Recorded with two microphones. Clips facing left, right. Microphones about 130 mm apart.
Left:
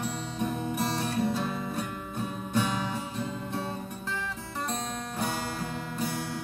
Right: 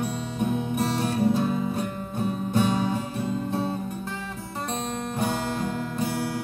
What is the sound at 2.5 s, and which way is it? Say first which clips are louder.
Music: right 5 dB; 30° right (ahead or behind).